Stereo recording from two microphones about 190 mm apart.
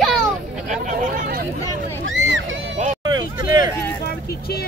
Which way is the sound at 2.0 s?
85° right.